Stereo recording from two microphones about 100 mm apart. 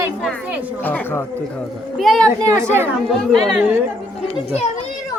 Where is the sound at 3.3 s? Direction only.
Centre (ahead or behind).